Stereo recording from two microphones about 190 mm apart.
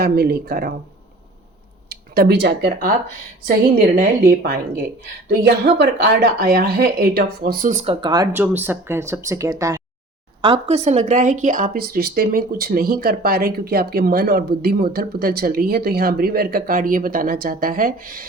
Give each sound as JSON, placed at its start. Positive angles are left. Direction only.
{"t": 0.0, "sound": "speech", "side_deg": -55}
{"t": 1.9, "sound": "speech", "side_deg": -55}
{"t": 5.6, "sound": "speech", "side_deg": -55}
{"t": 8.0, "sound": "speech", "side_deg": -20}
{"t": 8.3, "sound": "speech", "side_deg": -10}
{"t": 10.4, "sound": "speech", "side_deg": -30}